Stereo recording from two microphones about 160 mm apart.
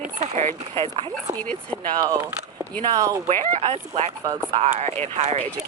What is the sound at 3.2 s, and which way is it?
Speech, 45° right (ahead or behind).